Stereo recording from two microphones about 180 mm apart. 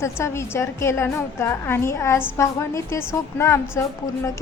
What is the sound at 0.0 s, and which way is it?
A woman's voice, 15° left (ahead or behind).